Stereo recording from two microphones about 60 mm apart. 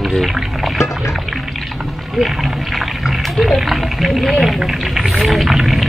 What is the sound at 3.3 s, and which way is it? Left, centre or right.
Speech, centre.